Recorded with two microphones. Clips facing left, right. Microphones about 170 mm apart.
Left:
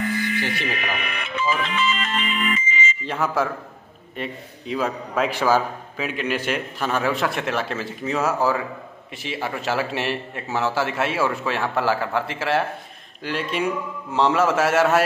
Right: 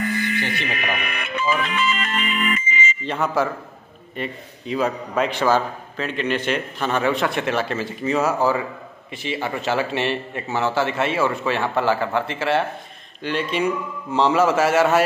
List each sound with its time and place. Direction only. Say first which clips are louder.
0.4 s a man's voice: even; 5° left (ahead or behind)
0.8 s music: right 2 dB; 60° right (ahead or behind)
3.1 s a man's voice: right 2 dB; centre (ahead or behind)